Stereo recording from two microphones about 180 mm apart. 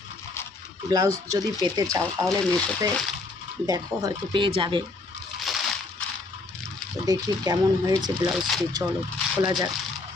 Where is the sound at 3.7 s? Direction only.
20° right (ahead or behind).